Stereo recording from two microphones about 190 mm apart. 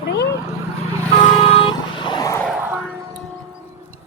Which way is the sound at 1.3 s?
25° left (ahead or behind).